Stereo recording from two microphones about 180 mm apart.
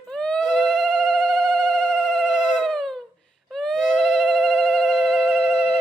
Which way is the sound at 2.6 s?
5° left (ahead or behind).